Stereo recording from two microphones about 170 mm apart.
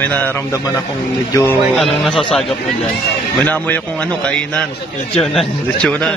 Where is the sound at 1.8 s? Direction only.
5° left (ahead or behind).